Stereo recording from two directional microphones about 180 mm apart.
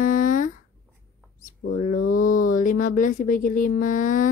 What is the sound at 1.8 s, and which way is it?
Speech, 50° left (ahead or behind).